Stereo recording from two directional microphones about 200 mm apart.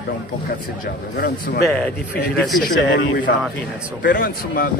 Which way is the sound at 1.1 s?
50° left (ahead or behind).